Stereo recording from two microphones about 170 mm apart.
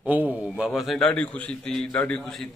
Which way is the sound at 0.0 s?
10° right (ahead or behind).